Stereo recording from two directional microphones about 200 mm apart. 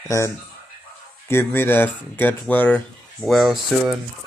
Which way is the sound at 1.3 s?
10° left (ahead or behind).